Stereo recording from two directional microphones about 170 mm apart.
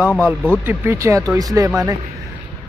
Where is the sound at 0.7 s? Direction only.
15° right (ahead or behind).